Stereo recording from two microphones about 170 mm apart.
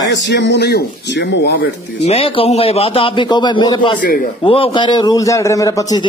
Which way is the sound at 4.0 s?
55° left (ahead or behind).